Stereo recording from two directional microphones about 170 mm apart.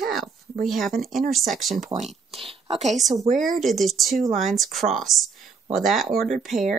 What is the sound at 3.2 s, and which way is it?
Speech, 50° right (ahead or behind).